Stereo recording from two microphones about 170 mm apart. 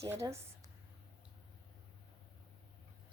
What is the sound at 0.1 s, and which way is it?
Speech, 15° right (ahead or behind).